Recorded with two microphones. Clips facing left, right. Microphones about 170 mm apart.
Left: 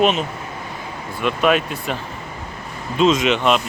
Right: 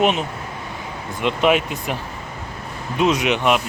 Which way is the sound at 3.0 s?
15° right (ahead or behind).